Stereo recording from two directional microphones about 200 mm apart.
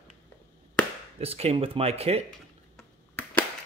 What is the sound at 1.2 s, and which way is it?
Speech, 30° right (ahead or behind).